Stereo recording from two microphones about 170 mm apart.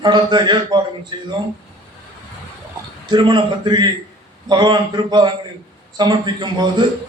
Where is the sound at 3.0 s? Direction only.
25° right (ahead or behind).